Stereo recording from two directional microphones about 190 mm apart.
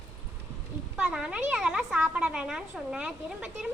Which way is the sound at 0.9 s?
5° right (ahead or behind).